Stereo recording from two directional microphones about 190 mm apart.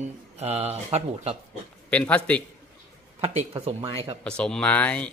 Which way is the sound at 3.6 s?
30° right (ahead or behind).